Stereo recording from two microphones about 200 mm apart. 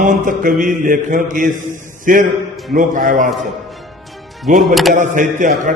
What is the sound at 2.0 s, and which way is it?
Speech, 40° right (ahead or behind).